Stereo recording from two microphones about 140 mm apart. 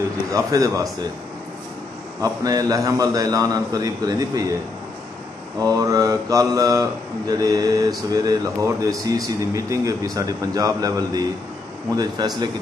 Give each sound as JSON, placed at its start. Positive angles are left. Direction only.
{"t": 0.3, "sound": "mantra", "side_deg": -25}
{"t": 2.2, "sound": "mantra", "side_deg": -25}
{"t": 5.6, "sound": "mantra", "side_deg": -25}